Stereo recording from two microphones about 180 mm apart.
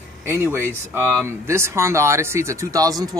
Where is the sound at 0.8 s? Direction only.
15° right (ahead or behind).